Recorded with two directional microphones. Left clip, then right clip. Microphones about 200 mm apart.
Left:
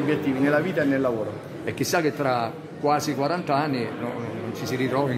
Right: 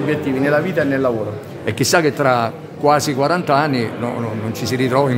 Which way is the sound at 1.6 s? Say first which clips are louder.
Right 8 dB; 25° right (ahead or behind).